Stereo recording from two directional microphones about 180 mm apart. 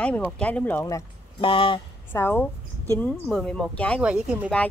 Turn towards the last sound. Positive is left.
turn(degrees=-5)  # may be behind; listen again after turning